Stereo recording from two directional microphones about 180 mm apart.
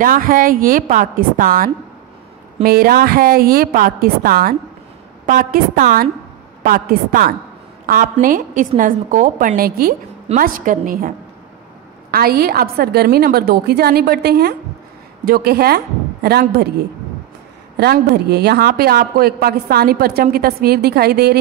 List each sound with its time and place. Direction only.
0.0 s a woman's voice: 50° right (ahead or behind)
12.1 s a woman's voice: 55° right (ahead or behind)
17.7 s a woman's voice: 60° right (ahead or behind)